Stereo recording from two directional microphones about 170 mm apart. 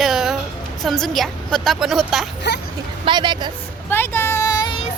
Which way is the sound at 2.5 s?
85° left.